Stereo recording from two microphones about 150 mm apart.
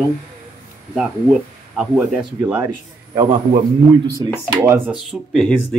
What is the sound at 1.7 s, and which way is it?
Speech, centre (ahead or behind).